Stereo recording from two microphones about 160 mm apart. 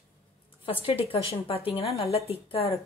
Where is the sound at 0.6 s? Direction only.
35° left (ahead or behind).